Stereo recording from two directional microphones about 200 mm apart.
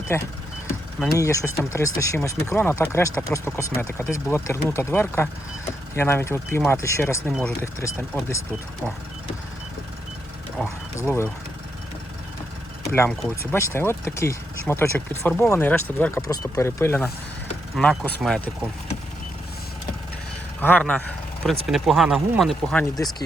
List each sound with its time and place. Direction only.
0.1 s speech: 10° left (ahead or behind)
10.6 s mechanisms: 10° left (ahead or behind)
12.9 s speech: 10° left (ahead or behind)
20.6 s speech: 10° left (ahead or behind)